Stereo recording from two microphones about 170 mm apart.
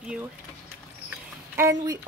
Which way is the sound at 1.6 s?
20° right (ahead or behind).